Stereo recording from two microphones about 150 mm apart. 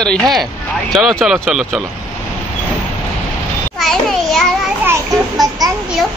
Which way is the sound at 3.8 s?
5° left (ahead or behind).